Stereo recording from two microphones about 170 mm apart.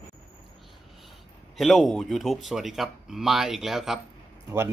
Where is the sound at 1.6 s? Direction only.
Centre (ahead or behind).